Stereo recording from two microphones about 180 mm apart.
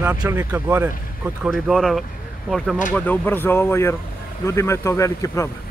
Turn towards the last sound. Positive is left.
turn(degrees=15)  # may be behind; listen again after turning